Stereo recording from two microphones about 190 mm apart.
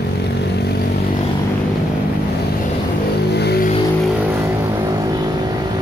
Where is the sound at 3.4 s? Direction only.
60° left (ahead or behind).